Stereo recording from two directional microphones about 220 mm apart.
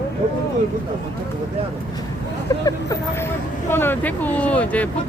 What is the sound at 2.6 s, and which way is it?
Speech, 15° left (ahead or behind).